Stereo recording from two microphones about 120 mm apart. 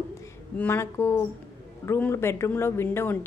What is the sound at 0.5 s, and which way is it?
A woman's voice, 15° left (ahead or behind).